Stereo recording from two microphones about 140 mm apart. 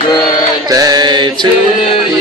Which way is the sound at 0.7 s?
25° right (ahead or behind).